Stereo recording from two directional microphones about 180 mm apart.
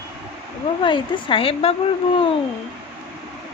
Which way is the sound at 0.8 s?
30° left (ahead or behind).